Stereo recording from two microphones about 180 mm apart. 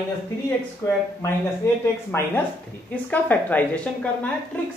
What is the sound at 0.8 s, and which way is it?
A woman's voice, 15° left (ahead or behind).